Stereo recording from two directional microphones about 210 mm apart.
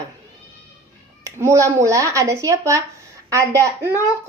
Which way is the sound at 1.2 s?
15° right (ahead or behind).